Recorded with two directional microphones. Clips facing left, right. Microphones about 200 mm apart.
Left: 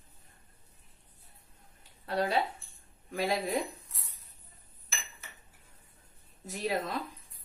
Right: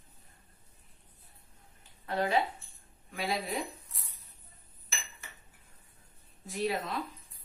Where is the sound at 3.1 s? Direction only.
45° left (ahead or behind).